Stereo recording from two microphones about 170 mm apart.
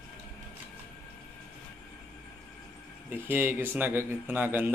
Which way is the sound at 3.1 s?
10° right (ahead or behind).